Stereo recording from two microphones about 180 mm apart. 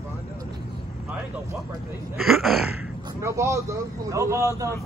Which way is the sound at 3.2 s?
15° right (ahead or behind).